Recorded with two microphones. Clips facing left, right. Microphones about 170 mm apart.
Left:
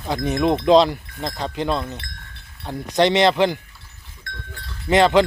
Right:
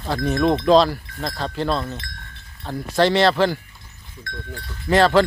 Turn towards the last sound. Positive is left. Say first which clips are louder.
# even
turn(degrees=20)  # may be behind; listen again after turning